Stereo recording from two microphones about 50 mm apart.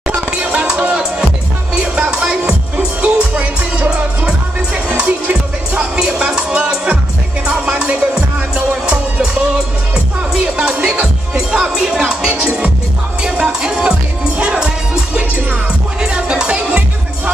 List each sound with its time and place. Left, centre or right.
0.1 s music: right
16.0 s music: centre